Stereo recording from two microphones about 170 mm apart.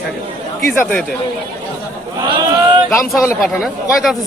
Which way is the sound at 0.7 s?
10° left (ahead or behind).